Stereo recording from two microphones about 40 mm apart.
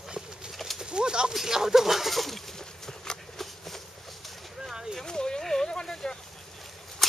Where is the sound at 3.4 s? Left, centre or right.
Centre.